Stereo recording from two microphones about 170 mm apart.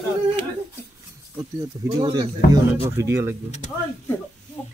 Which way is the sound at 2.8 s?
15° right (ahead or behind).